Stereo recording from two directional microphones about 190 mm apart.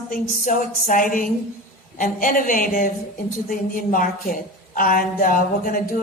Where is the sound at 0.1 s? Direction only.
45° left (ahead or behind).